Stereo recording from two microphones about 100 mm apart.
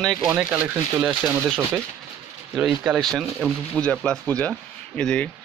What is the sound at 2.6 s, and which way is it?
Speech, 5° right (ahead or behind).